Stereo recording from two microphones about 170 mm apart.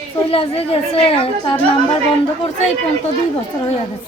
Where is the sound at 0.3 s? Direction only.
35° left (ahead or behind).